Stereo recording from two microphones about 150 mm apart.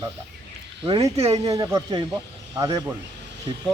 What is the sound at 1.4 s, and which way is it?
Speech, 25° right (ahead or behind).